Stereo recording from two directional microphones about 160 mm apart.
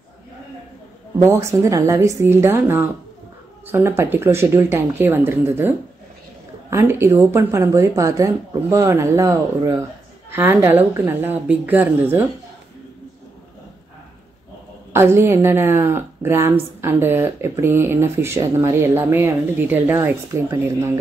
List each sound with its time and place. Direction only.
1.2 s a woman's voice: 15° right (ahead or behind)
14.9 s a woman's voice: 15° right (ahead or behind)